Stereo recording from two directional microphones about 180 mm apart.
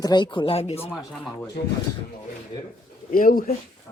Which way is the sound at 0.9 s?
Centre (ahead or behind).